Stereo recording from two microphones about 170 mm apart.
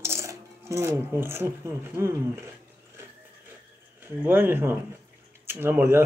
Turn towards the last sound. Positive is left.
turn(degrees=-10)  # may be behind; listen again after turning